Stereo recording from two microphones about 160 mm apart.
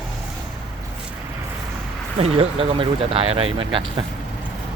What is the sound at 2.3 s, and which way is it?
Speech, 35° right (ahead or behind).